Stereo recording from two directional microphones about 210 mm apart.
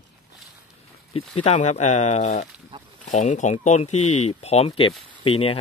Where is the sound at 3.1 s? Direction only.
35° left (ahead or behind).